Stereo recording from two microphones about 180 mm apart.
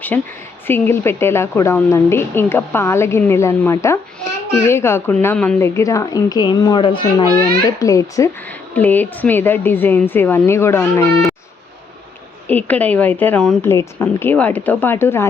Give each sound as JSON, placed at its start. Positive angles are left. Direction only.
{"t": 0.1, "sound": "speech", "side_deg": 10}
{"t": 12.5, "sound": "speech", "side_deg": 10}